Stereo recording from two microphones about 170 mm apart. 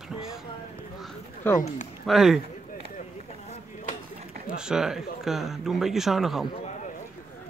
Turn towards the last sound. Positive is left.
turn(degrees=0)  # may be behind; listen again after turning